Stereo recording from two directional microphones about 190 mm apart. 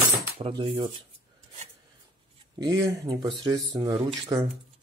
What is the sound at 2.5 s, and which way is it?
Speech, 20° right (ahead or behind).